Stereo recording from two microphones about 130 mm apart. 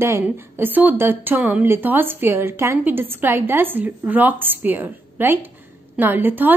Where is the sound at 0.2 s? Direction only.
15° right (ahead or behind).